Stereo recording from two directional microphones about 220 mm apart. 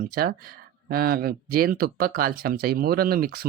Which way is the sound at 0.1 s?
45° right (ahead or behind).